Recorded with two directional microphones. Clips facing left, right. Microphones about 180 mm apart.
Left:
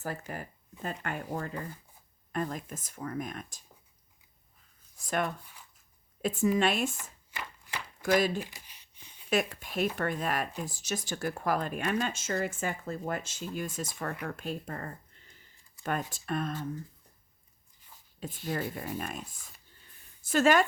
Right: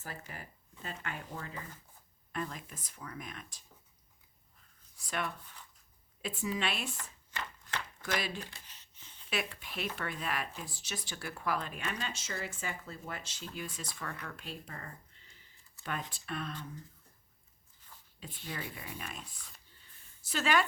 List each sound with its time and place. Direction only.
0.0 s speech: 50° left (ahead or behind)
4.9 s speech: 45° left (ahead or behind)
6.9 s a sound: 10° left (ahead or behind)
8.0 s speech: 45° left (ahead or behind)
8.4 s a sound: 10° left (ahead or behind)
9.3 s speech: 45° left (ahead or behind)
18.2 s speech: 45° left (ahead or behind)